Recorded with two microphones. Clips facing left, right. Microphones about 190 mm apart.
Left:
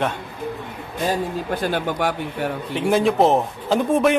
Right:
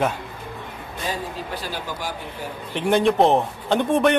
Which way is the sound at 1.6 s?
55° left (ahead or behind).